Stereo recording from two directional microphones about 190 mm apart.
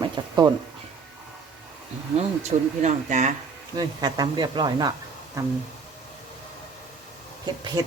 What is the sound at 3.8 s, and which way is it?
Speech, 20° right (ahead or behind).